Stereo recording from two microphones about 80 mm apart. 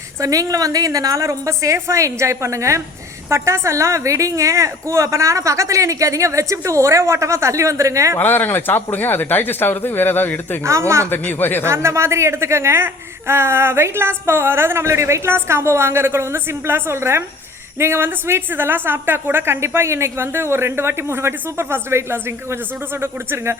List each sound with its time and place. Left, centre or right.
0.2 s a woman's voice: right
8.2 s speech: left
10.6 s a woman's voice: right
11.1 s speech: left
11.6 s a woman's voice: right